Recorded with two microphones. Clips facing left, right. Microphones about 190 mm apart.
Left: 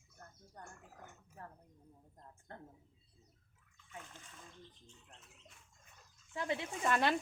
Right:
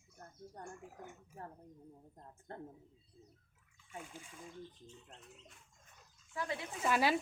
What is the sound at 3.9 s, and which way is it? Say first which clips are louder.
Speech: right 4 dB; 10° right (ahead or behind).